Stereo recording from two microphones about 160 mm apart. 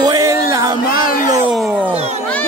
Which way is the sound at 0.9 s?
65° left (ahead or behind).